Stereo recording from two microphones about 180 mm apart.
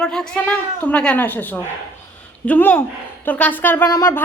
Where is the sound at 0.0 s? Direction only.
5° left (ahead or behind).